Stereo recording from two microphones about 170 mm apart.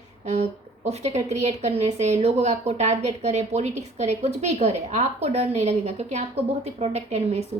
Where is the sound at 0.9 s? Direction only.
40° right (ahead or behind).